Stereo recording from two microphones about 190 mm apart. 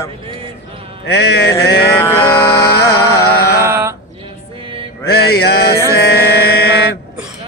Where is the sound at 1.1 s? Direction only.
60° left (ahead or behind).